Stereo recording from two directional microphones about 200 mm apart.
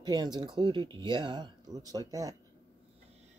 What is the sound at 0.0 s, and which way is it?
Speech, 20° right (ahead or behind).